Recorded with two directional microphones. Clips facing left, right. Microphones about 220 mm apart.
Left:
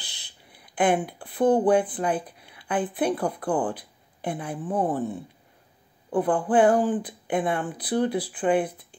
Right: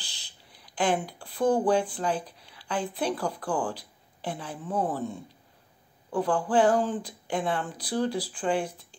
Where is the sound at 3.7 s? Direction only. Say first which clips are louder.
Left 1 dB; 55° left (ahead or behind).